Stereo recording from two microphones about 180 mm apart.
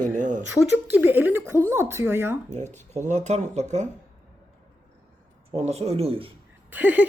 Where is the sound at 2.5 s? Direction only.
40° right (ahead or behind).